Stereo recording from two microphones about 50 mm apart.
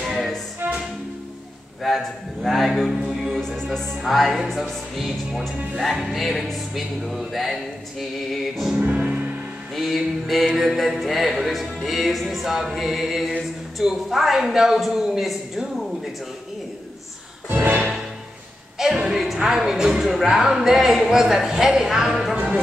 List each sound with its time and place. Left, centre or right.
0.0 s music: centre
1.8 s a man's voice: centre
3.3 s music: centre
8.9 s music: right
9.8 s music: centre
17.5 s music: right
19.0 s speech: centre
22.3 s speech: right